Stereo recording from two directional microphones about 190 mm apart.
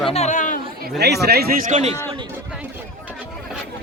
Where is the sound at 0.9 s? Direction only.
60° right (ahead or behind); by 2.0 s 40° right (ahead or behind).